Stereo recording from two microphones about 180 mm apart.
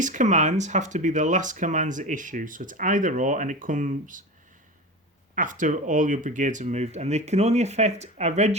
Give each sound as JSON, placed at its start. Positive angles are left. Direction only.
{"t": 0.0, "sound": "speech", "side_deg": -45}
{"t": 5.3, "sound": "speech", "side_deg": -45}